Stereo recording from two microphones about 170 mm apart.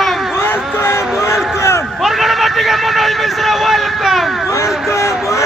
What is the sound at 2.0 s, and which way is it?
Vehicle, centre (ahead or behind).